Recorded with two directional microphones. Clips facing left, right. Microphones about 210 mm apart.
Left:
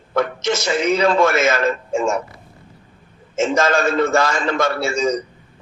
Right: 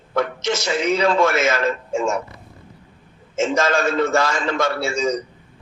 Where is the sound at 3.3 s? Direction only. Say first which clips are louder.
Left 2 dB; 50° left (ahead or behind).